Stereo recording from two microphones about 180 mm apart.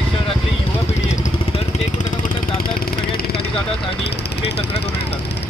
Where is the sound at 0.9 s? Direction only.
40° left (ahead or behind); by 5.2 s 70° left (ahead or behind).